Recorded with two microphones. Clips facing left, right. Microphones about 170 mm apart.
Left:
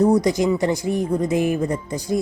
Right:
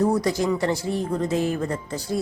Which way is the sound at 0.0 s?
20° left (ahead or behind).